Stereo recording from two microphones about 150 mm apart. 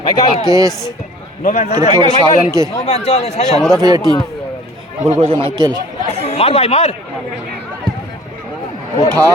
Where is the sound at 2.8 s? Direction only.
45° left (ahead or behind).